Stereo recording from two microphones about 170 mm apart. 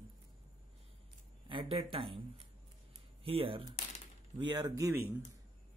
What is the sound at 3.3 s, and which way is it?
Speech, 30° right (ahead or behind).